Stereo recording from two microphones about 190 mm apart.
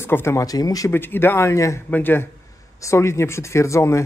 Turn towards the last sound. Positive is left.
turn(degrees=15)  # may be behind; listen again after turning